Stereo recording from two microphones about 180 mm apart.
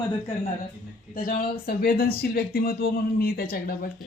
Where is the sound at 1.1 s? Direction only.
50° left (ahead or behind).